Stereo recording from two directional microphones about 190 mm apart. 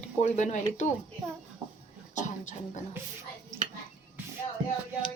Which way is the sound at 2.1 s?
40° left (ahead or behind).